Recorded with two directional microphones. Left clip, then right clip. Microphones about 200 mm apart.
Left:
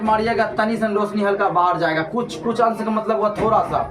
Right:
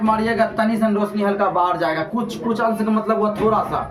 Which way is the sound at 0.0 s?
Centre (ahead or behind).